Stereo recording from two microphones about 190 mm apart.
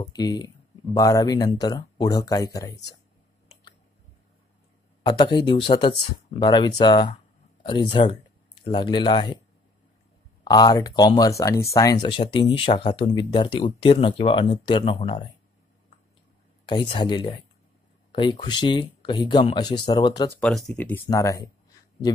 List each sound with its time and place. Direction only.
0.1 s speech: 20° left (ahead or behind)
5.0 s speech: 25° left (ahead or behind)
10.4 s speech: 20° left (ahead or behind)
16.6 s speech: 25° left (ahead or behind)
20.2 s speech: 5° left (ahead or behind)
21.1 s speech: 15° left (ahead or behind)